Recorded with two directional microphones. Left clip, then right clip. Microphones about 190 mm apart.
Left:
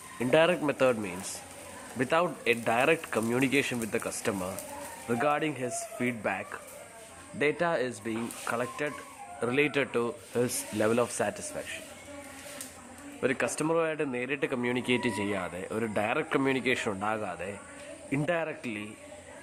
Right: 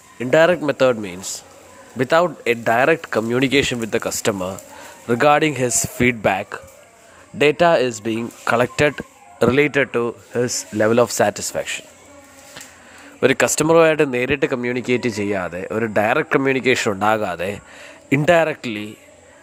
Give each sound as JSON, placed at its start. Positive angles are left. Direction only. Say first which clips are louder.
{"t": 0.2, "sound": "speech", "louder": "right 10 dB", "side_deg": -35}
{"t": 13.1, "sound": "speech", "louder": "right 13 dB", "side_deg": -45}